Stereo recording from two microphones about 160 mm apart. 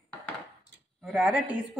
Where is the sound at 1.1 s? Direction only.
10° right (ahead or behind).